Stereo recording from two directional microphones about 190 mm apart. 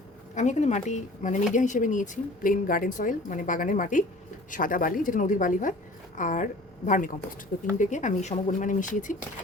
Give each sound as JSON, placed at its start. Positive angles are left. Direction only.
{"t": 0.3, "sound": "a woman's voice", "side_deg": 40}